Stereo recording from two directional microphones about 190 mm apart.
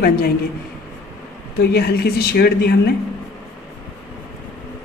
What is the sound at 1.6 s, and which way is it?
A woman's voice, 60° left (ahead or behind).